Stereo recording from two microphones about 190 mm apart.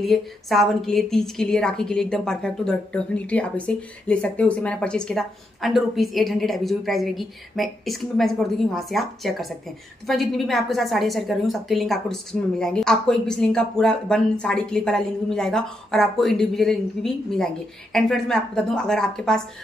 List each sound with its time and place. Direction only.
0.0 s a woman's voice: centre (ahead or behind)